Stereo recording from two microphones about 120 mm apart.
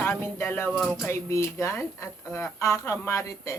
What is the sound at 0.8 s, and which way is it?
Music, 5° right (ahead or behind).